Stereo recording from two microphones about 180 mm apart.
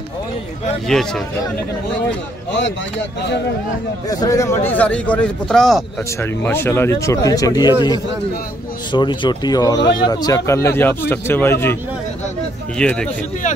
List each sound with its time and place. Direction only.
4.1 s a man's voice: 20° left (ahead or behind); by 5.9 s centre (ahead or behind)
6.4 s a man's voice: 10° left (ahead or behind)
12.7 s a man's voice: 5° left (ahead or behind)